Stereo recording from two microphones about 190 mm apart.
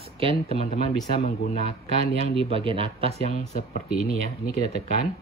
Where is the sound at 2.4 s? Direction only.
30° right (ahead or behind).